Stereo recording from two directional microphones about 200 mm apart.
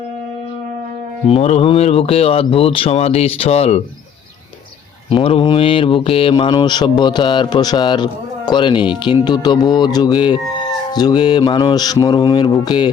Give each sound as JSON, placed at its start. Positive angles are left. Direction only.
{"t": 1.3, "sound": "speech", "side_deg": 30}
{"t": 5.0, "sound": "speech", "side_deg": 25}